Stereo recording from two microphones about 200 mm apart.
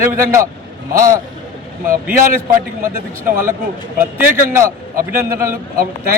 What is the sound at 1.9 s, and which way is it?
Speech, 45° right (ahead or behind).